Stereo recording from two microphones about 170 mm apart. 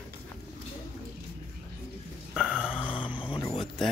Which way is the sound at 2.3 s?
Centre (ahead or behind).